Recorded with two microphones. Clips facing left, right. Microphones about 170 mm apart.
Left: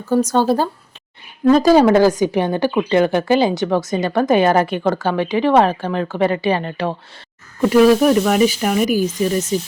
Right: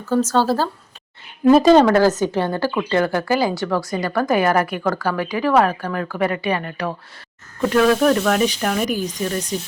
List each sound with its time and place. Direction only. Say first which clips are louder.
0.1 s speech: left 2 dB; 15° left (ahead or behind)
1.6 s a woman's voice: left 1 dB; 5° left (ahead or behind); by 6.9 s 25° left (ahead or behind)
7.7 s speech: left 4 dB; 10° left (ahead or behind)